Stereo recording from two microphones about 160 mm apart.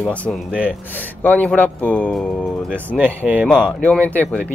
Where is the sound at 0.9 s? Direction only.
10° left (ahead or behind).